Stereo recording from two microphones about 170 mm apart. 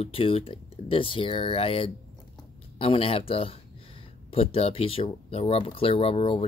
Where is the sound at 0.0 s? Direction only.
35° left (ahead or behind).